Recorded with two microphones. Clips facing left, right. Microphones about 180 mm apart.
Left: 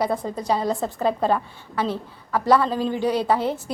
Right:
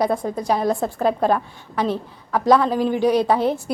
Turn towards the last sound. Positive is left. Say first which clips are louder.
# right 3 dB
turn(degrees=-15)  # may be behind; listen again after turning